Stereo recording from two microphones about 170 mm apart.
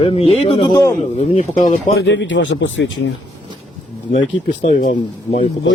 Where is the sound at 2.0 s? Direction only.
90° left.